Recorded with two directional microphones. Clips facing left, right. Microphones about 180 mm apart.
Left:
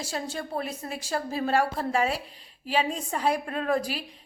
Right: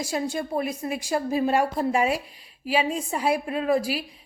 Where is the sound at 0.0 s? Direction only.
15° right (ahead or behind).